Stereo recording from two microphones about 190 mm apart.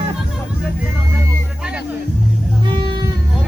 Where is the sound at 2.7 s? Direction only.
25° right (ahead or behind).